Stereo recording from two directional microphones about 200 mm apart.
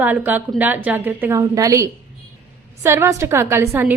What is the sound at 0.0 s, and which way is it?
A woman's voice, 10° right (ahead or behind).